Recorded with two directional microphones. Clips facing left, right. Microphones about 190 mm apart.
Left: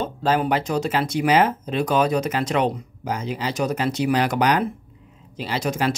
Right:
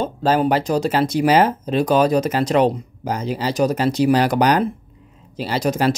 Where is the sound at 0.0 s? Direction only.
35° right (ahead or behind).